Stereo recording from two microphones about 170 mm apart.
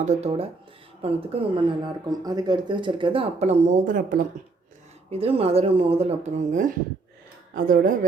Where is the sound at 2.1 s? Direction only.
25° right (ahead or behind); by 4.2 s 55° right (ahead or behind).